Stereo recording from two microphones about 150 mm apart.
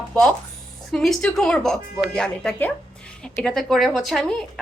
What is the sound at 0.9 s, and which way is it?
A woman's voice, centre (ahead or behind).